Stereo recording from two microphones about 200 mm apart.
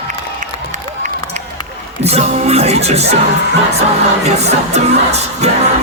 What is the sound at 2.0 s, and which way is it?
Music, 30° right (ahead or behind).